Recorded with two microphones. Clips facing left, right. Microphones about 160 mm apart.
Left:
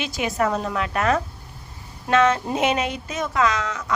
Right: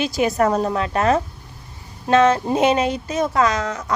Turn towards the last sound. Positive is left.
turn(degrees=-40)  # may be behind; listen again after turning